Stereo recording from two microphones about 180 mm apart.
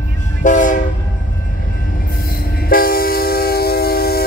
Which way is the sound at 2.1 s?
55° left (ahead or behind).